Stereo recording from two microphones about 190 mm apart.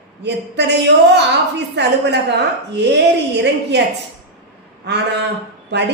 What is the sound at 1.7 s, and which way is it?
A woman's voice, 65° right (ahead or behind).